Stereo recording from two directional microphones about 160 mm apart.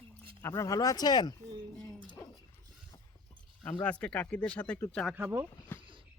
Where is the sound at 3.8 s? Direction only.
10° left (ahead or behind).